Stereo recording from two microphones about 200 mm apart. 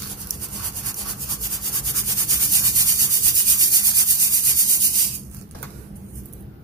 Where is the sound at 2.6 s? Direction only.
20° right (ahead or behind).